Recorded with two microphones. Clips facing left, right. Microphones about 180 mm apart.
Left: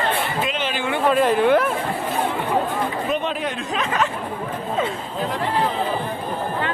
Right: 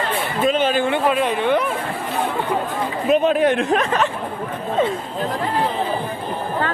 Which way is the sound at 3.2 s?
55° right (ahead or behind).